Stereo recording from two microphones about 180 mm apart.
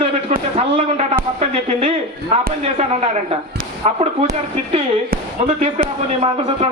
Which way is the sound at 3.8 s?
35° right (ahead or behind).